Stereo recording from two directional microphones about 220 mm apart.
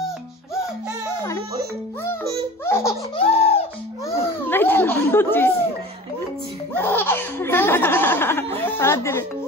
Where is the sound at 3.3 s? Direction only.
25° left (ahead or behind).